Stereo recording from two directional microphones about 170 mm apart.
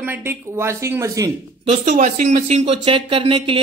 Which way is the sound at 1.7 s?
45° right (ahead or behind).